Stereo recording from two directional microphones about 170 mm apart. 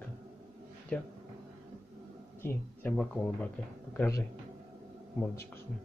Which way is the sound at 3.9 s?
20° left (ahead or behind).